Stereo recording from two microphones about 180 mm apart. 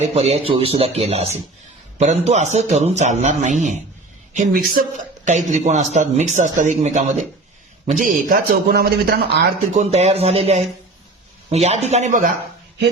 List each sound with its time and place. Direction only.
0.0 s a man's voice: 35° right (ahead or behind)
4.4 s a woman's voice: 50° right (ahead or behind)
5.2 s a man's voice: 40° right (ahead or behind); by 9.5 s 65° right (ahead or behind)
9.7 s a man's voice: 35° right (ahead or behind)